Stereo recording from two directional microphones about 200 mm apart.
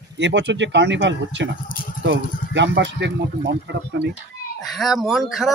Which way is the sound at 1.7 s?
45° left (ahead or behind).